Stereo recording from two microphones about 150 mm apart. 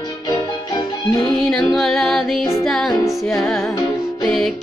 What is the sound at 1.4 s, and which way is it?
Music, centre (ahead or behind).